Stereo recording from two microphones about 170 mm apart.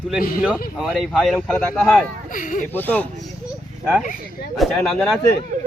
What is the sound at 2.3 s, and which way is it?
Speech, 50° left (ahead or behind).